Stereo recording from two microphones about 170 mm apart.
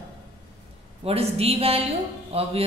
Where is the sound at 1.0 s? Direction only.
35° right (ahead or behind).